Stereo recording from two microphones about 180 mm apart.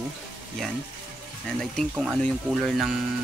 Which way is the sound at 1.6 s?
Centre (ahead or behind).